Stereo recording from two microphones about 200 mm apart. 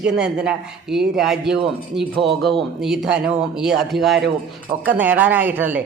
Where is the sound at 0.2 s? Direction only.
5° right (ahead or behind).